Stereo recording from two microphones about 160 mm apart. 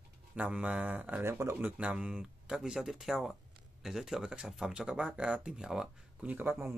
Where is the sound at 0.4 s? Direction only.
10° right (ahead or behind).